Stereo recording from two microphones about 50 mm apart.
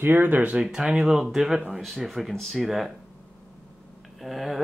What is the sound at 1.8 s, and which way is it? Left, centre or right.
Speech, centre.